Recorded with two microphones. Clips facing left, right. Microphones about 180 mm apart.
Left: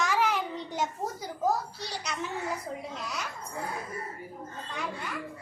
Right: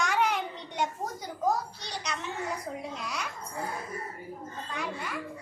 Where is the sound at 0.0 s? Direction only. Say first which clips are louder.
Even; centre (ahead or behind).